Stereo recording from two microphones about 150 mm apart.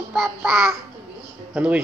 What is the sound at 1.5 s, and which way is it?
Speech, 10° right (ahead or behind).